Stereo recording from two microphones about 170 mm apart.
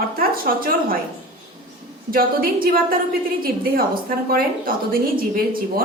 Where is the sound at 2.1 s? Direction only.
60° right (ahead or behind).